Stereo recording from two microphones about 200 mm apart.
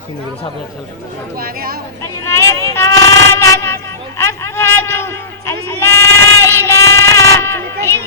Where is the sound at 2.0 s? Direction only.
15° left (ahead or behind).